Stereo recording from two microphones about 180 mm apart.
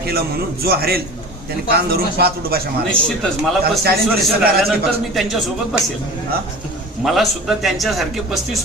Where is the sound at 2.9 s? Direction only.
5° left (ahead or behind).